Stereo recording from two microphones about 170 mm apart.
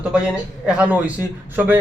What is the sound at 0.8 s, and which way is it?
A man's voice, 10° right (ahead or behind).